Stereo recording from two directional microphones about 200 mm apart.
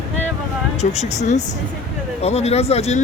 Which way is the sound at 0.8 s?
35° left (ahead or behind).